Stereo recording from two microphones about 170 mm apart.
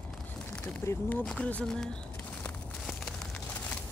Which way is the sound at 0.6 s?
10° left (ahead or behind).